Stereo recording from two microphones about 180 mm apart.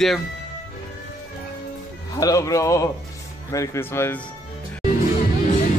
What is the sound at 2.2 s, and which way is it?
Speech, 20° left (ahead or behind).